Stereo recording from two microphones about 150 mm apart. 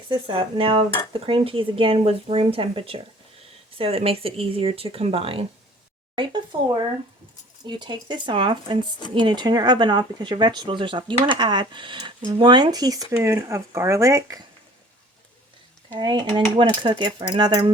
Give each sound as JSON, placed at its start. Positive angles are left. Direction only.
{"t": 0.1, "sound": "speech", "side_deg": -35}
{"t": 16.0, "sound": "speech", "side_deg": -30}